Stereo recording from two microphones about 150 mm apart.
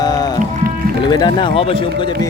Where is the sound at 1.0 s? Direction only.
30° left (ahead or behind).